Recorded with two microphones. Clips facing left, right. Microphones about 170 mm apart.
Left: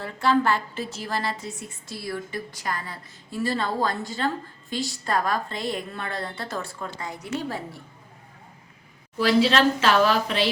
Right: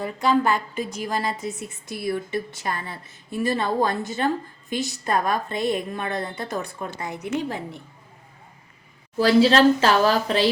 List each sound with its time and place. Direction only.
0.0 s a woman's voice: 15° right (ahead or behind)
9.1 s speech: 35° right (ahead or behind)